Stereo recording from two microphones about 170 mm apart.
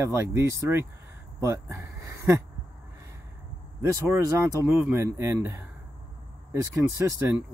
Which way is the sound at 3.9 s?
15° right (ahead or behind).